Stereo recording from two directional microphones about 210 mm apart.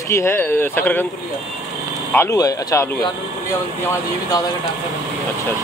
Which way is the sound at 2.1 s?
15° left (ahead or behind).